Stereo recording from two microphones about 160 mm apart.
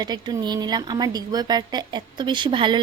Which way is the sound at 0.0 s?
25° right (ahead or behind).